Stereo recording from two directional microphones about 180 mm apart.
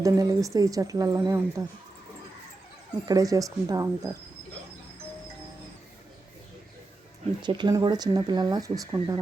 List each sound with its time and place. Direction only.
0.0 s speech: 20° right (ahead or behind)
3.1 s speech: 20° right (ahead or behind)
7.4 s speech: 25° right (ahead or behind)